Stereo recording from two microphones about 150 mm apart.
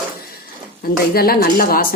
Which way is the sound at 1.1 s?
85° left.